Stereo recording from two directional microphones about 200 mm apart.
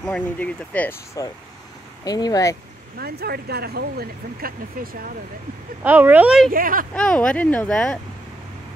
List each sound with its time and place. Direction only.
0.0 s speech: 5° left (ahead or behind)
3.0 s speech: 50° right (ahead or behind)
5.9 s speech: 10° right (ahead or behind)
6.5 s speech: 45° right (ahead or behind)
7.0 s speech: 5° left (ahead or behind)